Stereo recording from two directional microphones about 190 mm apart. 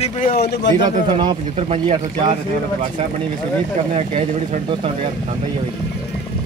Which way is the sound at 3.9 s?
30° right (ahead or behind).